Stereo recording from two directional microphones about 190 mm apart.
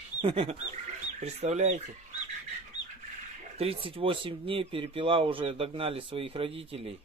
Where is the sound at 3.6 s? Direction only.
30° right (ahead or behind).